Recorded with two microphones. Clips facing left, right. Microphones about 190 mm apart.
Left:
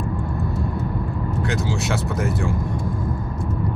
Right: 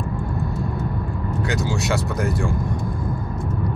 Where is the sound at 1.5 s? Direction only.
Centre (ahead or behind).